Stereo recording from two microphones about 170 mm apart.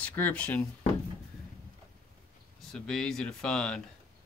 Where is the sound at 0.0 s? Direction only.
10° left (ahead or behind).